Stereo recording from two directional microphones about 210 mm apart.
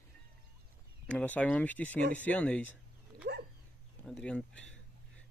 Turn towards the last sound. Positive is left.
turn(degrees=5)  # may be behind; listen again after turning